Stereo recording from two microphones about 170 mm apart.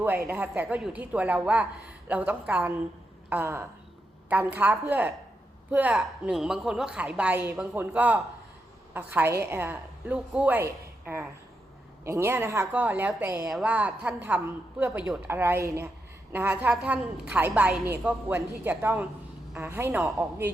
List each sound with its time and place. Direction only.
0.3 s a woman's voice: 10° right (ahead or behind)